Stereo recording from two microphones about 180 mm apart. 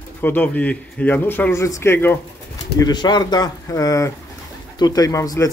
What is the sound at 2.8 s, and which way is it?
Speech, 25° left (ahead or behind).